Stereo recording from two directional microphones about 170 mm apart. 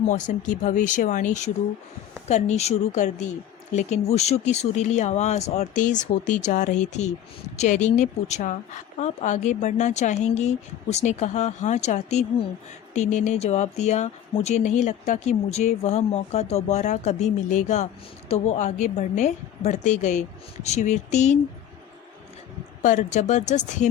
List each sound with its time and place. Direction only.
0.1 s speech: 50° left (ahead or behind)
22.8 s speech: 45° left (ahead or behind)